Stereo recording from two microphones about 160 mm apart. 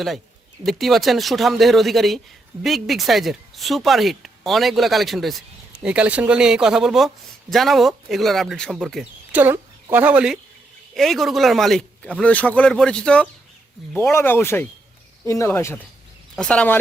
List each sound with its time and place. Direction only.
0.6 s speech: centre (ahead or behind)
9.3 s speech: 10° right (ahead or behind); by 15.8 s 15° left (ahead or behind)
16.3 s speech: 5° left (ahead or behind)